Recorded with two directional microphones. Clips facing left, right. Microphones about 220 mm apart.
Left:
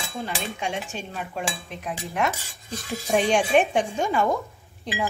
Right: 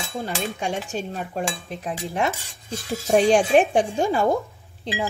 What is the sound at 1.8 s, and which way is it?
Speech, 30° right (ahead or behind).